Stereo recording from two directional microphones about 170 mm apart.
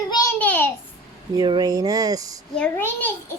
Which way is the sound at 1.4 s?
25° right (ahead or behind).